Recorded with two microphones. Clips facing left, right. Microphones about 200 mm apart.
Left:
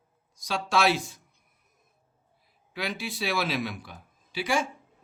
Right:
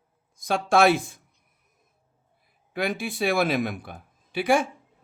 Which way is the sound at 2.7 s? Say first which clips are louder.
Right 6 dB; 50° right (ahead or behind).